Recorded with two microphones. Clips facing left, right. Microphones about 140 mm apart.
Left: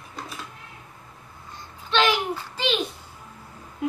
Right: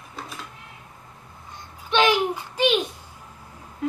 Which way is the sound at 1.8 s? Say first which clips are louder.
Right 3 dB; 15° right (ahead or behind).